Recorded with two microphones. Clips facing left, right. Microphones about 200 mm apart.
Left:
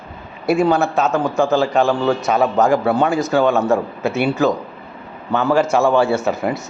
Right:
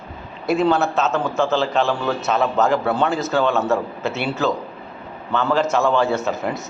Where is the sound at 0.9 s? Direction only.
15° left (ahead or behind).